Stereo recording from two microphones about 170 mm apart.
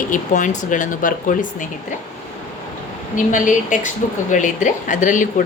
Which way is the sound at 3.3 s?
50° left (ahead or behind).